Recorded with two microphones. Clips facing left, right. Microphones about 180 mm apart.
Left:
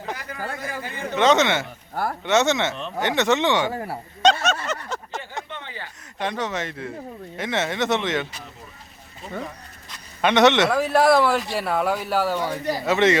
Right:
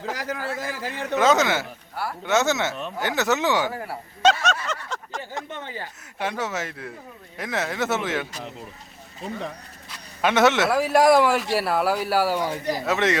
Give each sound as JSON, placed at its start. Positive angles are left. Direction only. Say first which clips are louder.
{"t": 0.1, "sound": "speech", "louder": "right 2 dB", "side_deg": -90}
{"t": 1.1, "sound": "speech", "louder": "left 1 dB", "side_deg": 0}
{"t": 3.7, "sound": "speech", "louder": "left 3 dB", "side_deg": 35}
{"t": 4.2, "sound": "a sound", "louder": "left 1 dB", "side_deg": -5}
{"t": 4.7, "sound": "a sound", "louder": "left 2 dB", "side_deg": 5}
{"t": 5.5, "sound": "a sound", "louder": "right 2 dB", "side_deg": -45}
{"t": 6.1, "sound": "speech", "louder": "left 1 dB", "side_deg": -5}
{"t": 10.2, "sound": "a man's voice", "louder": "left 2 dB", "side_deg": -5}
{"t": 12.8, "sound": "speech", "louder": "left 5 dB", "side_deg": 0}